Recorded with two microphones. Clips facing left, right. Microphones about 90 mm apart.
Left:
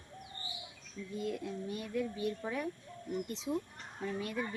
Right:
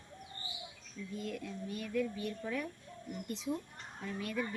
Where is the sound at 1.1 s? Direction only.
20° left (ahead or behind).